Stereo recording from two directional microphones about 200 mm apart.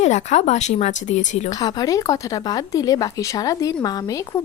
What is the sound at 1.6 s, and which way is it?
Speech, 20° left (ahead or behind).